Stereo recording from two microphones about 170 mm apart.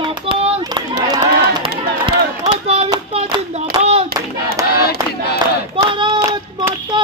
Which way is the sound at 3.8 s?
35° right (ahead or behind).